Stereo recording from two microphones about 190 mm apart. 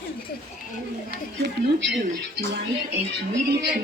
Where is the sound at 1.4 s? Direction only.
65° right (ahead or behind).